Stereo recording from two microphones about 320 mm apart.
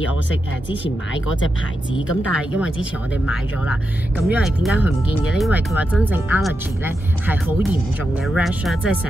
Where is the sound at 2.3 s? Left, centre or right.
Centre.